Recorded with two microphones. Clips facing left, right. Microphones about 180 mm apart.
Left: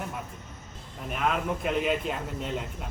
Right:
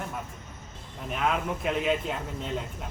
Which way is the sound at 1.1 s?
Centre (ahead or behind).